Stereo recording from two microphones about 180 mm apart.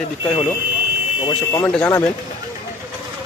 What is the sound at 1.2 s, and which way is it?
Speech, 20° left (ahead or behind).